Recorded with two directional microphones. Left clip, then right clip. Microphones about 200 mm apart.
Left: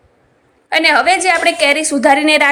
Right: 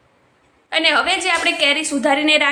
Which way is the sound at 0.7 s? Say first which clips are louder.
Left 5 dB; 25° left (ahead or behind).